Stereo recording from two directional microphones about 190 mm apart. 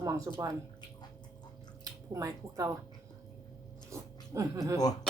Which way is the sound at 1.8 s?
15° right (ahead or behind).